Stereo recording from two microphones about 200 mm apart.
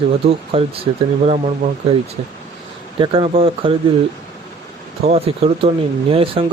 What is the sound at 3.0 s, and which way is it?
Speech, 25° right (ahead or behind).